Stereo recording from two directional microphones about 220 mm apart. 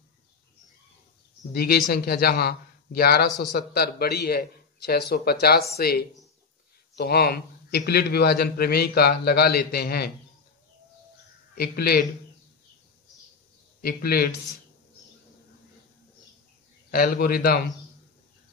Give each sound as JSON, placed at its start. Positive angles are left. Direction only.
{"t": 1.5, "sound": "a man's voice", "side_deg": 45}
{"t": 11.5, "sound": "a man's voice", "side_deg": 45}
{"t": 13.7, "sound": "a man's voice", "side_deg": 45}
{"t": 16.9, "sound": "a man's voice", "side_deg": 40}